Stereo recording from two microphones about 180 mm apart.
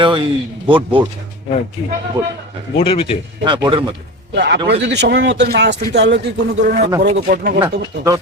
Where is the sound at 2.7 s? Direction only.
30° left (ahead or behind).